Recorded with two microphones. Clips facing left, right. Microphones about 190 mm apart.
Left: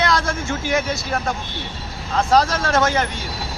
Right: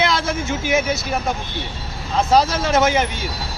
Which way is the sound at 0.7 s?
5° right (ahead or behind).